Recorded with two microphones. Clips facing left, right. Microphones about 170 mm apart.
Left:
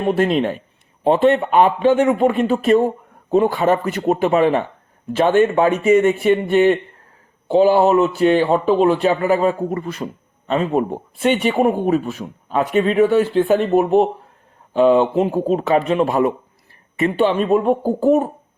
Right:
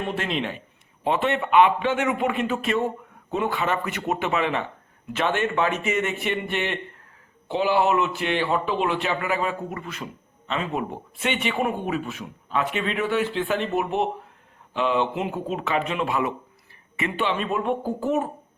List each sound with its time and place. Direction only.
0.0 s a man's voice: 40° left (ahead or behind)